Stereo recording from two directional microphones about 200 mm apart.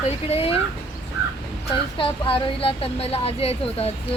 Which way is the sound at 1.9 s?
25° left (ahead or behind).